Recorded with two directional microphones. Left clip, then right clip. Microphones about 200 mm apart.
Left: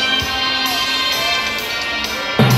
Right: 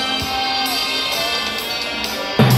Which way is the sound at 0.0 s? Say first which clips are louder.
Left 3 dB; 20° right (ahead or behind).